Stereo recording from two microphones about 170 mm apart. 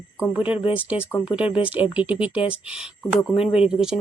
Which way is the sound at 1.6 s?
10° right (ahead or behind).